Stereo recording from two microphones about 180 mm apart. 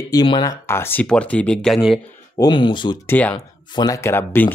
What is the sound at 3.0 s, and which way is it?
Speech, 10° left (ahead or behind).